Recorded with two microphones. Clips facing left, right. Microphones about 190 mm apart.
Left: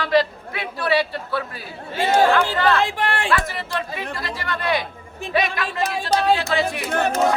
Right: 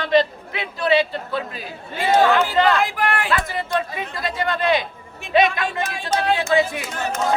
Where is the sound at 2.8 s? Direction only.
30° left (ahead or behind).